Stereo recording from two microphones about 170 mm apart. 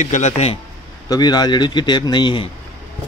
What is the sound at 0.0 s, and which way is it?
Speech, 45° left (ahead or behind).